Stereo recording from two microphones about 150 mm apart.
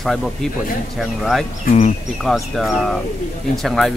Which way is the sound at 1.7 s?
50° left (ahead or behind).